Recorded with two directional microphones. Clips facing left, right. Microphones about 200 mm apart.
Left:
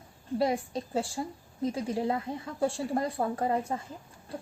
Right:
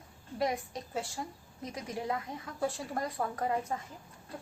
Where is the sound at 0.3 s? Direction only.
30° left (ahead or behind).